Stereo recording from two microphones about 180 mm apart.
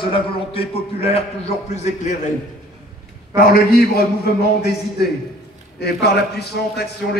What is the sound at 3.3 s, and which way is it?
Speech, 55° left (ahead or behind).